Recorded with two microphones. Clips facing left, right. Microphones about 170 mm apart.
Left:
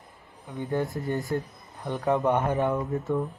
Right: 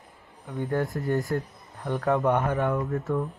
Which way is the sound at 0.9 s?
20° left (ahead or behind).